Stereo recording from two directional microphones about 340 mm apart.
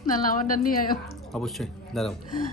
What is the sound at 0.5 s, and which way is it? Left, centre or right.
Speech, left.